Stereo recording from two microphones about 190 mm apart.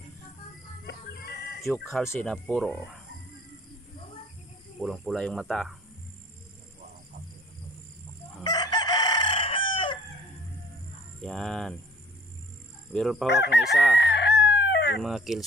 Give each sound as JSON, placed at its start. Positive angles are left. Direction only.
{"t": 1.6, "sound": "speech", "side_deg": 0}
{"t": 4.7, "sound": "speech", "side_deg": 0}
{"t": 8.5, "sound": "chicken", "side_deg": 20}
{"t": 11.1, "sound": "speech", "side_deg": 5}
{"t": 12.9, "sound": "speech", "side_deg": 0}
{"t": 13.3, "sound": "chicken", "side_deg": 65}
{"t": 15.0, "sound": "speech", "side_deg": 0}